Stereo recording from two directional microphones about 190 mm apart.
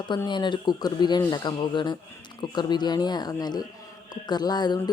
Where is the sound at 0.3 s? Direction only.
25° left (ahead or behind).